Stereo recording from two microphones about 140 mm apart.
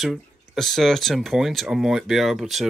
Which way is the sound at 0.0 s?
Centre (ahead or behind).